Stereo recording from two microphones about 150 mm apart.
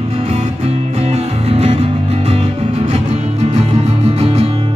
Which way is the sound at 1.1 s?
45° right (ahead or behind).